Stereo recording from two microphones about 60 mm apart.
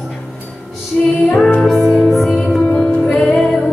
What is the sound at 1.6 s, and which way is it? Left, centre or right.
Music, centre.